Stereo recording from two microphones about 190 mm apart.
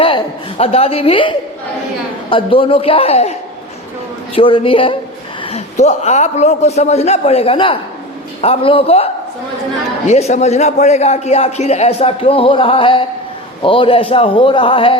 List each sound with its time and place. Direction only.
0.0 s a woman's voice: 30° left (ahead or behind)
4.4 s a man's voice: 25° left (ahead or behind)
10.1 s a man's voice: 35° left (ahead or behind)